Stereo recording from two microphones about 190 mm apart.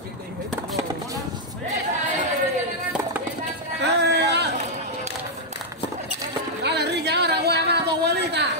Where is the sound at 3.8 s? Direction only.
65° right (ahead or behind).